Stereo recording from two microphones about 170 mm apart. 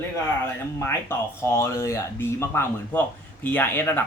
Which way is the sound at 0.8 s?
15° left (ahead or behind).